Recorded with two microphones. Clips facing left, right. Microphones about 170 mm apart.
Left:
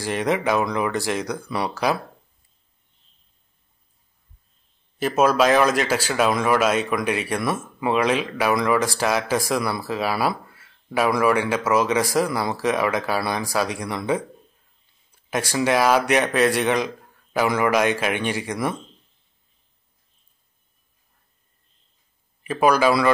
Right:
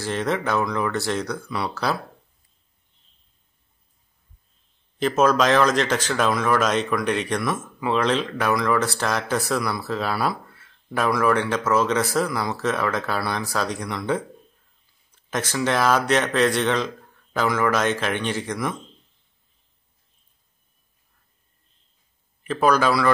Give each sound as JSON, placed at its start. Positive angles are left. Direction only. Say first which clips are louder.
{"t": 0.0, "sound": "speech", "louder": "left 2 dB", "side_deg": 15}
{"t": 4.9, "sound": "speech", "louder": "even", "side_deg": 10}
{"t": 9.6, "sound": "speech", "louder": "left 1 dB", "side_deg": 25}
{"t": 9.8, "sound": "speech", "louder": "left 1 dB", "side_deg": 10}
{"t": 15.0, "sound": "speech", "louder": "left 2 dB", "side_deg": 10}
{"t": 22.4, "sound": "speech", "louder": "left 1 dB", "side_deg": 10}